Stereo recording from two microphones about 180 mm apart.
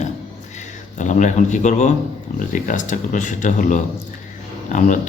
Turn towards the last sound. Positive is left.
turn(degrees=40)  # may be behind; listen again after turning